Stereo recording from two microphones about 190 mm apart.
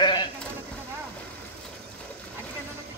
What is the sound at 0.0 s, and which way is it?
Sheep, 25° left (ahead or behind).